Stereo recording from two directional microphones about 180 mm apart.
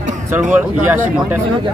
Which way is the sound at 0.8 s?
10° right (ahead or behind).